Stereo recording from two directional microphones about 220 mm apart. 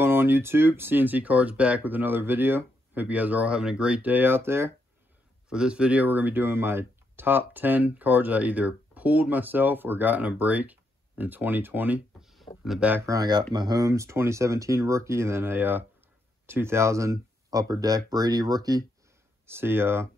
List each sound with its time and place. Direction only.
0.0 s speech: 10° right (ahead or behind)